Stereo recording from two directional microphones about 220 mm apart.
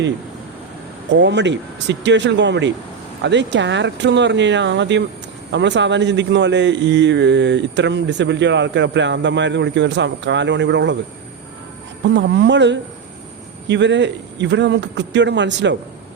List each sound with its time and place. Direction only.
1.1 s a man's voice: 55° right (ahead or behind)
12.0 s a man's voice: 55° right (ahead or behind)